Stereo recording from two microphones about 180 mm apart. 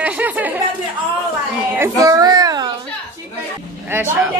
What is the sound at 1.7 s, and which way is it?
Speech, 20° right (ahead or behind).